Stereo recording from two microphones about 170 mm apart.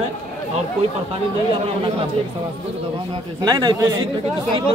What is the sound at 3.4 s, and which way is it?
Speech, 25° right (ahead or behind).